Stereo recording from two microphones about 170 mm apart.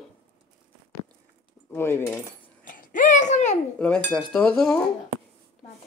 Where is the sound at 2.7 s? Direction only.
50° left (ahead or behind).